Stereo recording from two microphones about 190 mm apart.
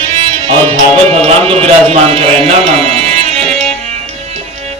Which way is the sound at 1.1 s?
30° right (ahead or behind).